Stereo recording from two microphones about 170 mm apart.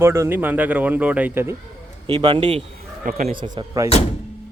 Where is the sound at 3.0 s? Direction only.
50° right (ahead or behind).